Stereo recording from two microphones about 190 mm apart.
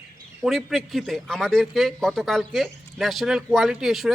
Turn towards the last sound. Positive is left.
turn(degrees=0)  # may be behind; listen again after turning